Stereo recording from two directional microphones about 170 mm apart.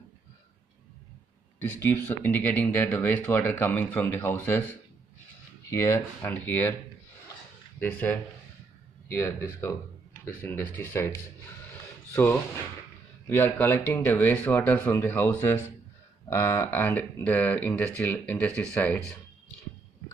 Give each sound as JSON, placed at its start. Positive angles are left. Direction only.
{"t": 1.6, "sound": "speech", "side_deg": 10}
{"t": 5.7, "sound": "speech", "side_deg": 15}
{"t": 7.8, "sound": "speech", "side_deg": 10}